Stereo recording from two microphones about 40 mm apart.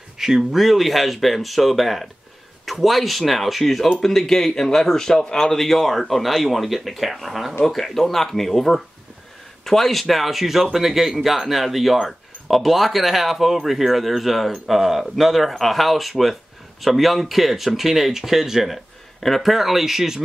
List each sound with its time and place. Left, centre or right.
0.2 s speech: centre